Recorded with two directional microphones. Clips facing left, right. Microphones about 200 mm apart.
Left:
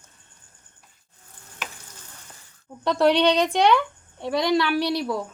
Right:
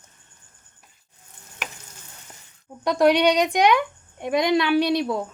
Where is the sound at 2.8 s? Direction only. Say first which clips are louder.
Right 1 dB; 10° right (ahead or behind).